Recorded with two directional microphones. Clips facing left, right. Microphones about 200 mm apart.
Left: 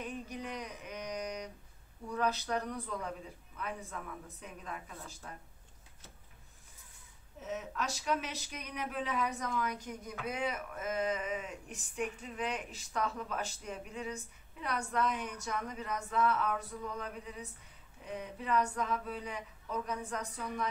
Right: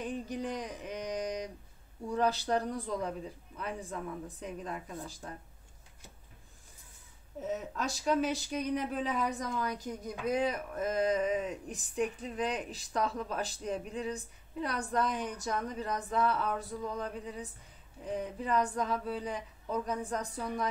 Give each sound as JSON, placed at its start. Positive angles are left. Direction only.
{"t": 0.0, "sound": "a sound", "side_deg": -30}
{"t": 2.0, "sound": "speech", "side_deg": -30}
{"t": 7.4, "sound": "speech", "side_deg": -35}